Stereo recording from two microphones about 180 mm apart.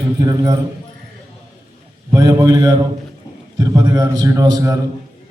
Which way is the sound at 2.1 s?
20° right (ahead or behind).